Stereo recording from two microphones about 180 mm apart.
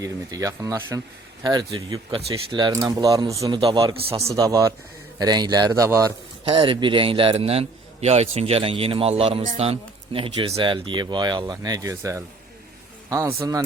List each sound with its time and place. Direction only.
0.0 s speech: 20° right (ahead or behind)
6.4 s a man's voice: 30° right (ahead or behind)